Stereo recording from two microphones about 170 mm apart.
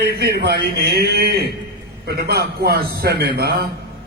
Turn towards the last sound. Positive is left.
turn(degrees=-70)  # may be behind; listen again after turning